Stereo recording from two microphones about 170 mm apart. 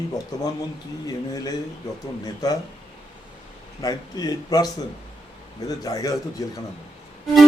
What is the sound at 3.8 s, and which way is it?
A man's voice, 20° left (ahead or behind).